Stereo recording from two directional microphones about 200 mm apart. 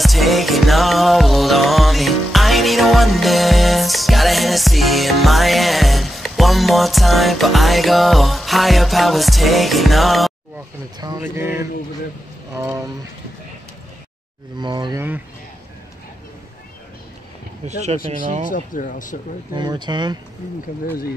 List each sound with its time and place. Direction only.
0.0 s music: centre (ahead or behind)
11.0 s speech: 15° right (ahead or behind)
14.6 s speech: 20° right (ahead or behind)
17.6 s speech: 35° right (ahead or behind)
18.5 s speech: 40° left (ahead or behind)
19.5 s speech: 20° right (ahead or behind)